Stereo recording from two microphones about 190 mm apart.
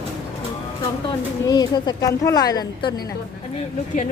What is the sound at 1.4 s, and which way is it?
A woman's voice, 20° left (ahead or behind).